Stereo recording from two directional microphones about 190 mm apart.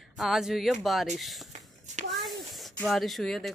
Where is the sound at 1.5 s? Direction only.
40° right (ahead or behind).